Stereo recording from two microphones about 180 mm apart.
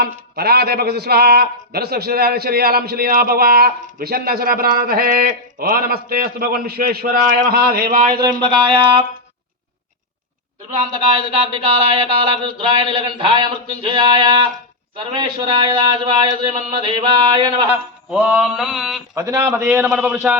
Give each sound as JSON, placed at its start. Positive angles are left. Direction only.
{"t": 0.0, "sound": "a man's voice", "side_deg": -60}
{"t": 8.2, "sound": "a sound", "side_deg": -25}
{"t": 10.8, "sound": "a sound", "side_deg": -35}
{"t": 17.7, "sound": "mantra", "side_deg": -10}
{"t": 19.1, "sound": "a man's voice", "side_deg": -15}
{"t": 19.5, "sound": "a man's voice", "side_deg": -5}